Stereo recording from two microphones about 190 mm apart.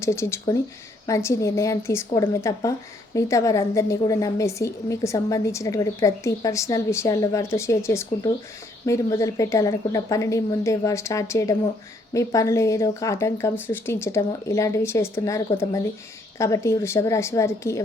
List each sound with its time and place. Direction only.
0.0 s a woman's voice: 15° left (ahead or behind)